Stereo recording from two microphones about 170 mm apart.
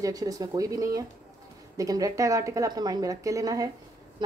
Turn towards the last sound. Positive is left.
turn(degrees=-20)  # may be behind; listen again after turning